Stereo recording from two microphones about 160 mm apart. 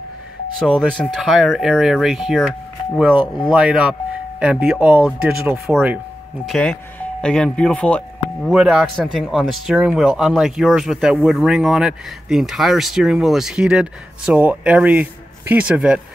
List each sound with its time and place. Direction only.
0.6 s speech: 5° right (ahead or behind)
3.2 s speech: 25° left (ahead or behind)
3.5 s speech: 5° right (ahead or behind)
6.6 s speech: 10° left (ahead or behind); by 16.0 s 5° right (ahead or behind)